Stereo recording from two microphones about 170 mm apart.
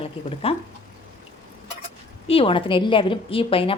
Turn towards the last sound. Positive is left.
turn(degrees=30)  # may be behind; listen again after turning